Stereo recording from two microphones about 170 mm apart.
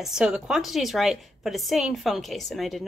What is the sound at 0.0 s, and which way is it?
A woman's voice, 5° right (ahead or behind).